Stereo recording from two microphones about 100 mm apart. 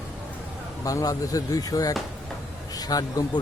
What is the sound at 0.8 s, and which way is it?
Speech, 35° left (ahead or behind).